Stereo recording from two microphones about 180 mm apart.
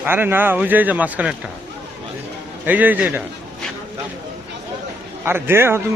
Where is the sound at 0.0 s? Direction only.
10° right (ahead or behind).